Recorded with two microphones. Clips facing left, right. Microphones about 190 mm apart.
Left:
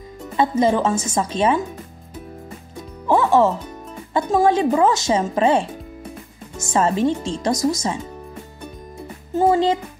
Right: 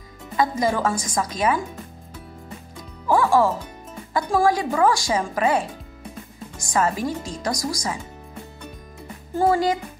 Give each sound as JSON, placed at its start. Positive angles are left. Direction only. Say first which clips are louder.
{"t": 0.4, "sound": "speech", "louder": "left 4 dB", "side_deg": 25}
{"t": 3.1, "sound": "music", "louder": "left 2 dB", "side_deg": 25}
{"t": 4.1, "sound": "speech", "louder": "left 3 dB", "side_deg": 20}
{"t": 9.3, "sound": "speech", "louder": "left 3 dB", "side_deg": 20}